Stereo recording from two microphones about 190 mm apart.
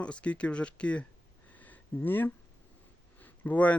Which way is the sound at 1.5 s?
10° left (ahead or behind).